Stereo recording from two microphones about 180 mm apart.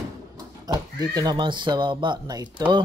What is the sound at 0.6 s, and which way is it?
Speech, 20° right (ahead or behind).